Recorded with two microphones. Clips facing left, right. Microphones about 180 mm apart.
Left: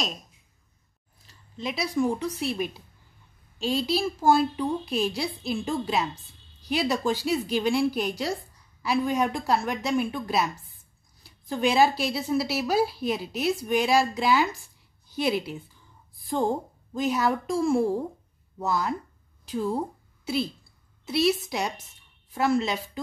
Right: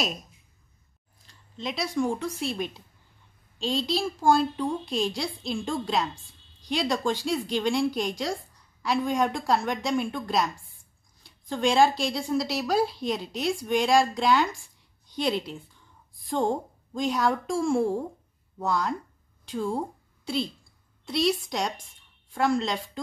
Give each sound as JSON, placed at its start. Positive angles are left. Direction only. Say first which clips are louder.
{"t": 1.2, "sound": "a woman's voice", "louder": "left 1 dB", "side_deg": 5}
{"t": 21.0, "sound": "speech", "louder": "left 2 dB", "side_deg": 5}